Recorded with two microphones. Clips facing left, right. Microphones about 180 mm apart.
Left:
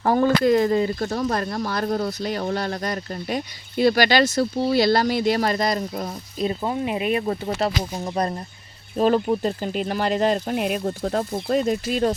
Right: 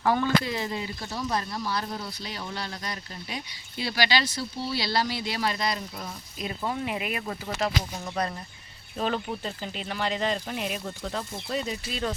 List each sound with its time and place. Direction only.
0.0 s speech: 40° left (ahead or behind)
6.5 s speech: 25° left (ahead or behind); by 12.1 s 45° left (ahead or behind)